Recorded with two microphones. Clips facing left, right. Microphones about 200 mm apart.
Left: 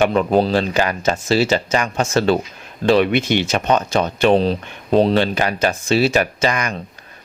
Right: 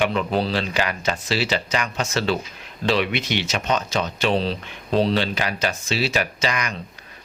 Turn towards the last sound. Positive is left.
turn(degrees=50)  # may be behind; listen again after turning